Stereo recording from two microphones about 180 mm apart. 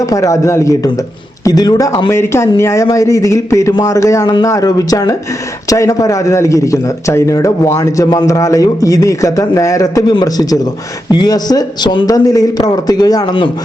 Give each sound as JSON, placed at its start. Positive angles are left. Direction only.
{"t": 0.0, "sound": "a man's voice", "side_deg": 20}